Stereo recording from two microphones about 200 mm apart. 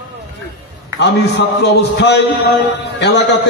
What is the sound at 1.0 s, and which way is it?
A man's voice, 60° left (ahead or behind).